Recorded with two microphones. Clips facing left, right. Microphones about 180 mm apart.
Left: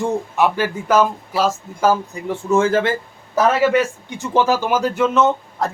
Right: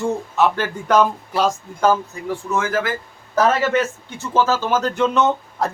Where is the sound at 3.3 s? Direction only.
10° left (ahead or behind).